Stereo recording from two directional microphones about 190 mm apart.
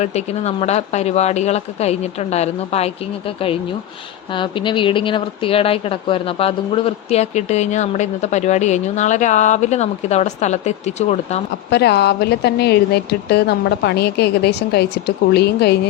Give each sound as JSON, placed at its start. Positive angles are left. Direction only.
{"t": 0.0, "sound": "speech", "side_deg": 35}
{"t": 4.4, "sound": "speech", "side_deg": 25}
{"t": 11.7, "sound": "speech", "side_deg": 60}